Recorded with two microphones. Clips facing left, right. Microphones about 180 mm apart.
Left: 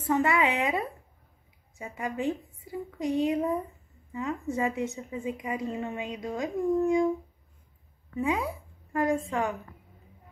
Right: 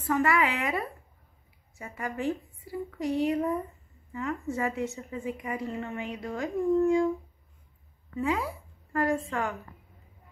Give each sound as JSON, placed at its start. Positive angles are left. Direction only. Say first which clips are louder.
{"t": 0.0, "sound": "a woman's voice", "louder": "left 1 dB", "side_deg": 20}
{"t": 8.2, "sound": "a woman's voice", "louder": "left 1 dB", "side_deg": 20}